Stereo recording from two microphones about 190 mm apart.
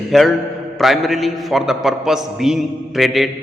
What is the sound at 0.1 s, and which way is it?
A man's voice, centre (ahead or behind).